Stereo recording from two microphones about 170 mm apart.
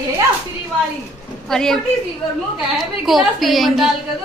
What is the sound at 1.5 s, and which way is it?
Speech, 5° left (ahead or behind).